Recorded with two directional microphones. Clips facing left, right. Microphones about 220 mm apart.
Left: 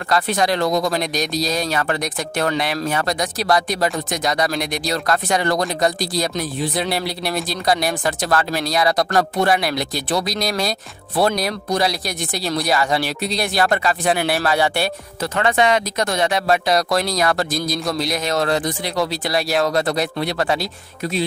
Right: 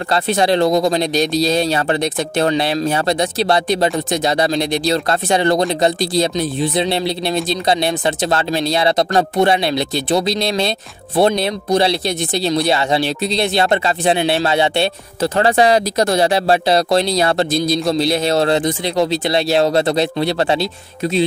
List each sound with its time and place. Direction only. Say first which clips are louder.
0.1 s speech: right 3 dB; 30° right (ahead or behind)